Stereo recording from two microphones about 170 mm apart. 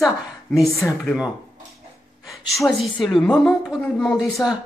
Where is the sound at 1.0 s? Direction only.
5° right (ahead or behind).